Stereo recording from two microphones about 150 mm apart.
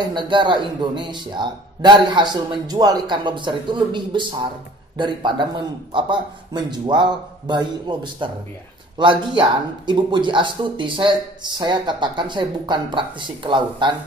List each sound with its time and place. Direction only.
0.0 s speech: 30° right (ahead or behind)